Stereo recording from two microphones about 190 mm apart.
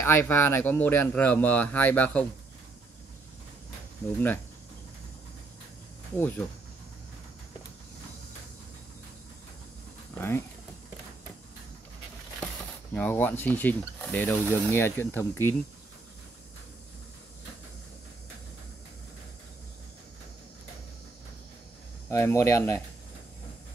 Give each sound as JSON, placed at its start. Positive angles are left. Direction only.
{"t": 0.0, "sound": "speech", "side_deg": 15}
{"t": 6.1, "sound": "speech", "side_deg": 10}
{"t": 10.1, "sound": "speech", "side_deg": 10}
{"t": 12.9, "sound": "speech", "side_deg": 10}
{"t": 22.1, "sound": "speech", "side_deg": 15}